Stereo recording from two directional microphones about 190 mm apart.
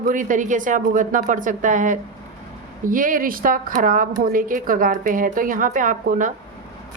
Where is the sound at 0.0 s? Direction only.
45° right (ahead or behind).